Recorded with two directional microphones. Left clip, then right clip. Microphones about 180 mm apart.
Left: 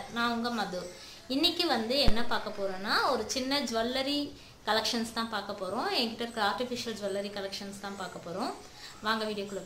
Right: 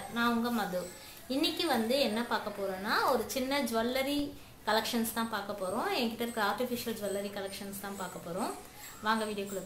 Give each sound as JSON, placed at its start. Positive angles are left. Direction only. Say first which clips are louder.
{"t": 0.1, "sound": "a woman's voice", "louder": "even", "side_deg": 15}
{"t": 9.0, "sound": "a woman's voice", "louder": "even", "side_deg": 15}